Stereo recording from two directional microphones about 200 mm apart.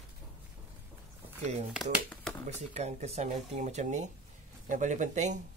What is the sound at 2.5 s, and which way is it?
Speech, 35° right (ahead or behind).